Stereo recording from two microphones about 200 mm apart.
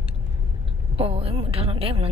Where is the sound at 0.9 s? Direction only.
30° right (ahead or behind).